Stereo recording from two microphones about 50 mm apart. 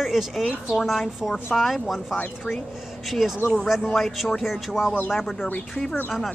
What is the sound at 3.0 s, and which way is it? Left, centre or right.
A woman's voice, centre.